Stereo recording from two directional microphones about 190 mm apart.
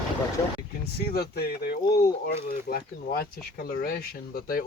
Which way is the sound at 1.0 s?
55° left (ahead or behind).